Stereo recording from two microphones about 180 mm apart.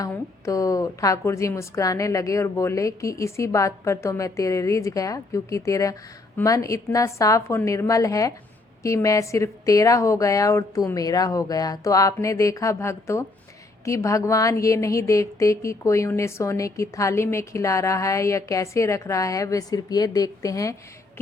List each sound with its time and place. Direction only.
0.1 s a woman's voice: 15° left (ahead or behind)